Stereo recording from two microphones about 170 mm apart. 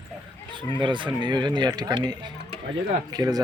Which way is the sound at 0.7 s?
30° right (ahead or behind).